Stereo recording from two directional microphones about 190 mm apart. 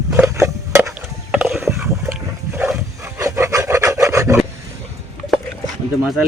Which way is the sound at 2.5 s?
10° right (ahead or behind).